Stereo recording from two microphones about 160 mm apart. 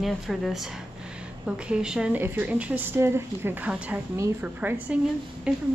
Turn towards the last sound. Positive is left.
turn(degrees=-5)  # may be behind; listen again after turning